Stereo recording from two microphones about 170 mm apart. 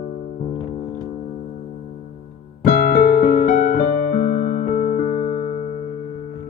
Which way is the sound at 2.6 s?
60° left (ahead or behind).